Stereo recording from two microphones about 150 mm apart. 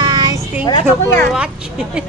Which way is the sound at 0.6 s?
35° left (ahead or behind).